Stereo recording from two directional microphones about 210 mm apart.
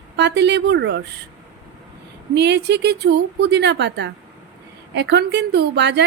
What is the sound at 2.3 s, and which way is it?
A woman's voice, 55° right (ahead or behind).